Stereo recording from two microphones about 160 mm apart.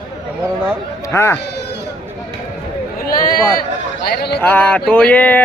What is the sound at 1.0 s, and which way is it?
Speech, 15° left (ahead or behind).